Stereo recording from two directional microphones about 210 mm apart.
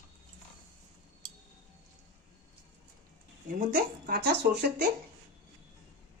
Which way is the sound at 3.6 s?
45° right (ahead or behind).